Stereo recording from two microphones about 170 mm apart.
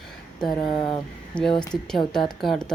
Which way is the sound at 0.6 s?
30° left (ahead or behind).